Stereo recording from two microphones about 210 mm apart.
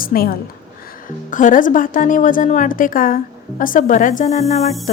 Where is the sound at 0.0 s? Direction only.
45° left (ahead or behind).